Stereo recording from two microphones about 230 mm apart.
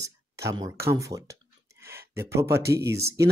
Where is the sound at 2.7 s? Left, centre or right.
Centre.